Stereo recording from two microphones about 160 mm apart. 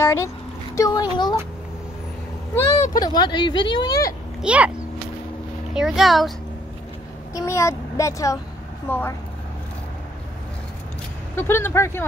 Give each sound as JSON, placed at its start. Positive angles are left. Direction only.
{"t": 0.0, "sound": "a sound", "side_deg": 15}
{"t": 2.9, "sound": "speech", "side_deg": 25}
{"t": 4.4, "sound": "speech", "side_deg": -5}
{"t": 7.3, "sound": "a child's voice", "side_deg": 20}
{"t": 11.3, "sound": "speech", "side_deg": 15}